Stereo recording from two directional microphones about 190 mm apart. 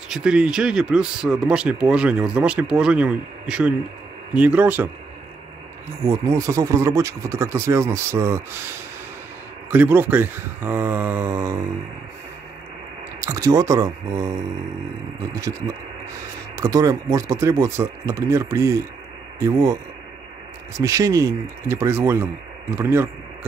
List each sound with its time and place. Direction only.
0.1 s speech: 5° right (ahead or behind)
6.0 s speech: 15° right (ahead or behind)
9.7 s speech: 10° right (ahead or behind)
13.2 s speech: 15° right (ahead or behind)
16.5 s speech: 15° right (ahead or behind)